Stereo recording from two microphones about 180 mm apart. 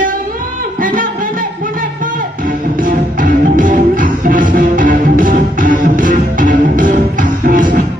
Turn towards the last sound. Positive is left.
turn(degrees=-45)  # may be behind; listen again after turning